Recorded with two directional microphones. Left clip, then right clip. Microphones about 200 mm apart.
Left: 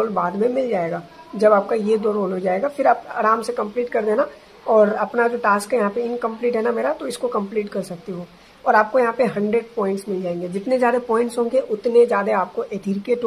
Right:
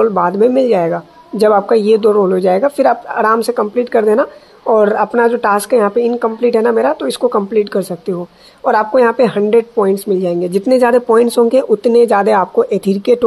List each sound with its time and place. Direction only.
0.0 s speech: 40° right (ahead or behind)